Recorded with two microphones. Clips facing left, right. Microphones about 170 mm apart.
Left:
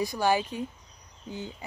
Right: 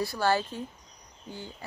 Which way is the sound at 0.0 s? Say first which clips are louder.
Left 1 dB; 15° left (ahead or behind).